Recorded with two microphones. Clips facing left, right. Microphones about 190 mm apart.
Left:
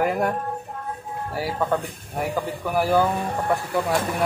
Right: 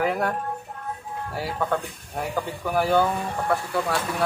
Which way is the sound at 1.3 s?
5° left (ahead or behind).